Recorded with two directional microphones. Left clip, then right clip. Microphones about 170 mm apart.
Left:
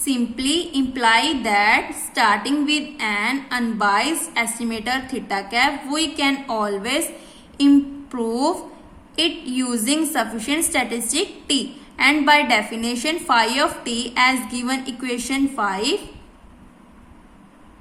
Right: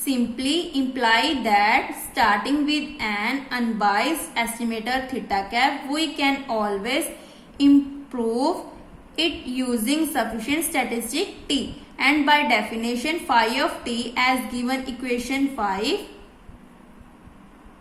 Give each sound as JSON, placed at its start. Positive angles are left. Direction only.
{"t": 0.0, "sound": "a woman's voice", "side_deg": 20}